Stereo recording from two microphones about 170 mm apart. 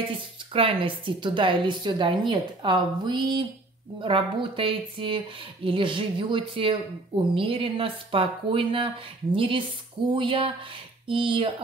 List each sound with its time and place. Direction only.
0.5 s a woman's voice: 30° right (ahead or behind)